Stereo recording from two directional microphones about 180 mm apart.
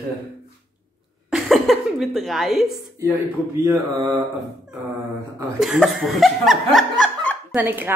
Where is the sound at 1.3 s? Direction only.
Centre (ahead or behind).